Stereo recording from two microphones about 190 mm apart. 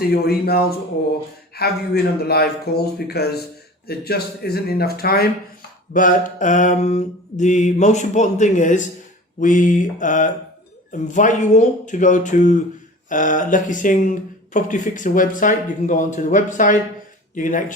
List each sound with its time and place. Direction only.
0.0 s a man's voice: 55° left (ahead or behind)
5.9 s mantra: 45° left (ahead or behind)
9.4 s speech: 45° left (ahead or behind)
11.1 s mantra: 40° left (ahead or behind)
13.1 s speech: 45° left (ahead or behind)